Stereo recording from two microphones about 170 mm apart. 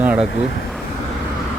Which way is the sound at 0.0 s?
10° right (ahead or behind).